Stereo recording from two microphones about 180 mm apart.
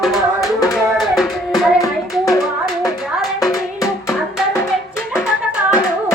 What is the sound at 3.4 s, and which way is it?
Music, 20° left (ahead or behind).